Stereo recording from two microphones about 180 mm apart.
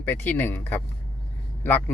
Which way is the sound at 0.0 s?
10° left (ahead or behind).